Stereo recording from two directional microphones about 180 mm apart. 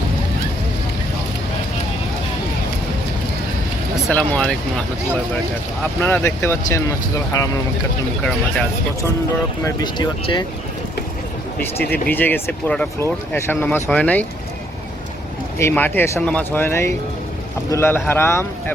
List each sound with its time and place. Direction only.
4.0 s speech: 5° left (ahead or behind)
5.8 s speech: 10° left (ahead or behind)
9.6 s speech: 25° left (ahead or behind)
11.9 s speech: 10° left (ahead or behind)
15.5 s speech: 10° left (ahead or behind)